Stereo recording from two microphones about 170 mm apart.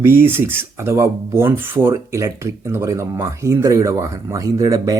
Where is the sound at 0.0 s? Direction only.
15° right (ahead or behind).